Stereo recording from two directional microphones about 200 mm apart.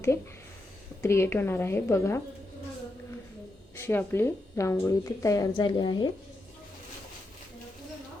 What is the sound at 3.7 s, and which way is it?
A woman's voice, 10° left (ahead or behind).